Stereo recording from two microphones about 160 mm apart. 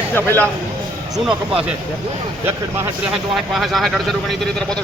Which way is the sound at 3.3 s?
Centre (ahead or behind).